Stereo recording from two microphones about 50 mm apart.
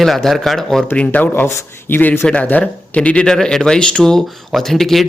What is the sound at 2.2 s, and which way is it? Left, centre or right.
A man's voice, left.